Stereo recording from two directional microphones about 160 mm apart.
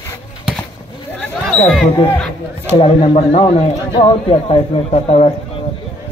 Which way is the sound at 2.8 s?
40° left (ahead or behind).